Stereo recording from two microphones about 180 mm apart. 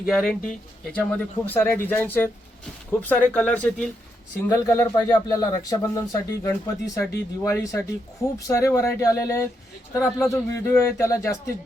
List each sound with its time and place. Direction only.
0.0 s speech: centre (ahead or behind)
4.4 s speech: 15° left (ahead or behind)